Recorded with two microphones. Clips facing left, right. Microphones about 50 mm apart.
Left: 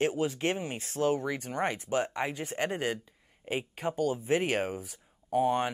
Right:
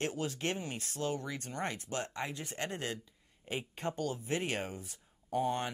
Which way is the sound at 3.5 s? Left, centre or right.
Centre.